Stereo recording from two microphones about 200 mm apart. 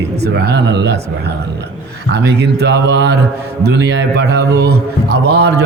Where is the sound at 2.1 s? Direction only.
55° right (ahead or behind).